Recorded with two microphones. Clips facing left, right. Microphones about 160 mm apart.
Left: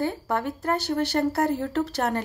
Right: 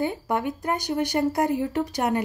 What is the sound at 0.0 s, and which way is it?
Speech, 15° right (ahead or behind).